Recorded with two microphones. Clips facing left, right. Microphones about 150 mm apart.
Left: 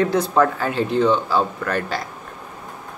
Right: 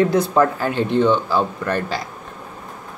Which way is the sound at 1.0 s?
Centre (ahead or behind).